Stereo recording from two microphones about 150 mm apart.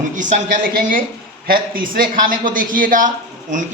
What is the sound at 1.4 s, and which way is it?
A man's voice, 75° right (ahead or behind).